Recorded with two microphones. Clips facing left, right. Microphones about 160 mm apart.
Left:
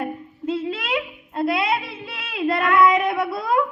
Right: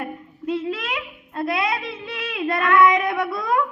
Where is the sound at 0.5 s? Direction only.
30° left (ahead or behind).